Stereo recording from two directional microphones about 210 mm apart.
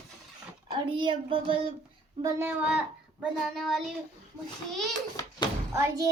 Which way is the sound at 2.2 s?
15° right (ahead or behind).